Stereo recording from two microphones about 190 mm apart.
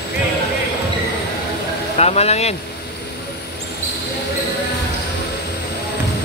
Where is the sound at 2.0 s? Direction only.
35° left (ahead or behind).